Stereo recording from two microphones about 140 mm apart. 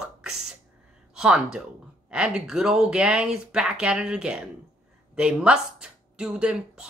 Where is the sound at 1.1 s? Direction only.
5° right (ahead or behind).